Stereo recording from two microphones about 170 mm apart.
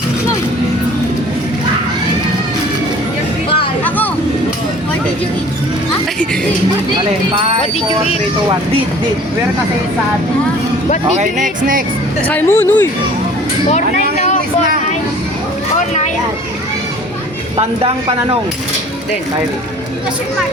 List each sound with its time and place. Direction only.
3.8 s vehicle: 10° left (ahead or behind)
11.2 s speech: 50° right (ahead or behind)
12.3 s speech: 10° left (ahead or behind)
13.7 s speech: 45° left (ahead or behind)